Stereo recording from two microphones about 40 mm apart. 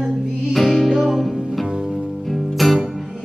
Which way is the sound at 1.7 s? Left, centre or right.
Right.